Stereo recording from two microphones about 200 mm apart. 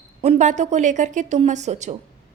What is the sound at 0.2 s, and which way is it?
A woman's voice, 35° right (ahead or behind).